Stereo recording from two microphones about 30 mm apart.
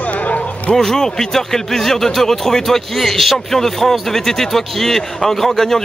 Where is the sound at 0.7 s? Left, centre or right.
Centre.